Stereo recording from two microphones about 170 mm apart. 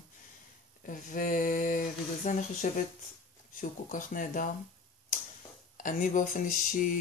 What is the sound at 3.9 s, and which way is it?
Speech, 50° left (ahead or behind).